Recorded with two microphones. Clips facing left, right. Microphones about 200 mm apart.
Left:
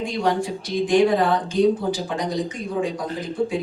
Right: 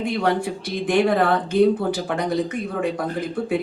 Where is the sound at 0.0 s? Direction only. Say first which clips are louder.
Right 1 dB; 60° right (ahead or behind).